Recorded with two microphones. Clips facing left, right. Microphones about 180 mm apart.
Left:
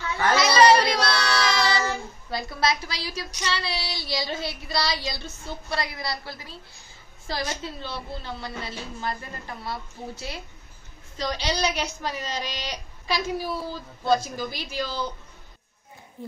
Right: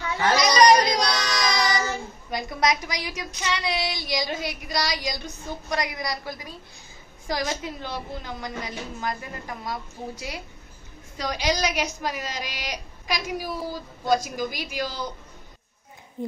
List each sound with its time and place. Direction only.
0.4 s child singing: 15° right (ahead or behind)
16.2 s a woman's voice: 20° right (ahead or behind)